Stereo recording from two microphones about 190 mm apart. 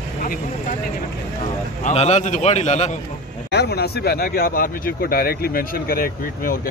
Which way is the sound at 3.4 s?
60° left (ahead or behind).